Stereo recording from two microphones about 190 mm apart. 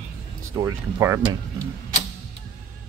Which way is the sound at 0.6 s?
20° right (ahead or behind).